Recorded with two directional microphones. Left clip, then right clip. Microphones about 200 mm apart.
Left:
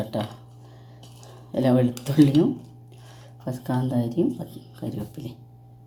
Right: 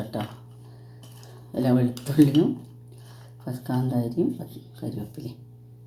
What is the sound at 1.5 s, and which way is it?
Speech, 15° left (ahead or behind).